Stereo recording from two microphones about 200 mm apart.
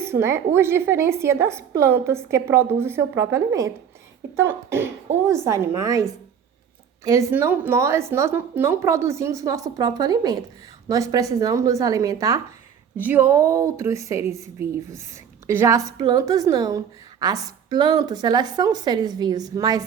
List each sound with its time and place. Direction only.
0.0 s a woman's voice: 10° right (ahead or behind)